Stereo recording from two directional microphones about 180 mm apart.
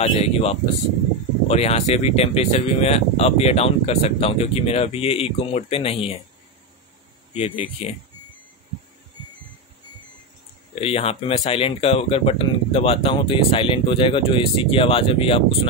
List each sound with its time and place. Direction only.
0.0 s speech: 35° left (ahead or behind)
7.3 s speech: 30° left (ahead or behind)
10.7 s speech: 35° left (ahead or behind)